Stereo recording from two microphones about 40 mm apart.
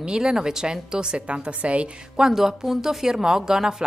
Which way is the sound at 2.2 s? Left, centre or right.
Centre.